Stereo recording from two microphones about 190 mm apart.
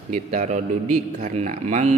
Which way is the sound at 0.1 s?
40° right (ahead or behind).